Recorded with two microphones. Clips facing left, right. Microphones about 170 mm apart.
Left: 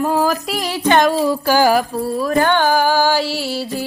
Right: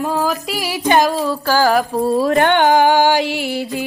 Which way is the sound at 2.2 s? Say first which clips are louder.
Left 1 dB; 65° right (ahead or behind).